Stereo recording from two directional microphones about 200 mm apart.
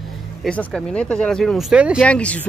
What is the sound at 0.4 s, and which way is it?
Speech, 5° left (ahead or behind).